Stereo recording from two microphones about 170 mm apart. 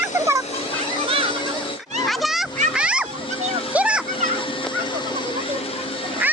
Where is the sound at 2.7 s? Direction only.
5° right (ahead or behind).